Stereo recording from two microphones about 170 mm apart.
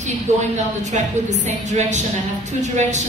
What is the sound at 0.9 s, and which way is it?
A woman's voice, 45° right (ahead or behind).